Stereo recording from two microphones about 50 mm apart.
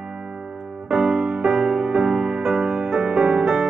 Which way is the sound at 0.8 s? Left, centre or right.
Centre.